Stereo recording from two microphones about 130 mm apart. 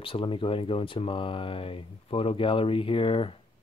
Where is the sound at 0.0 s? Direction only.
40° left (ahead or behind).